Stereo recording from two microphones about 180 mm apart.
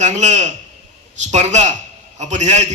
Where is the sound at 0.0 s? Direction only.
40° right (ahead or behind).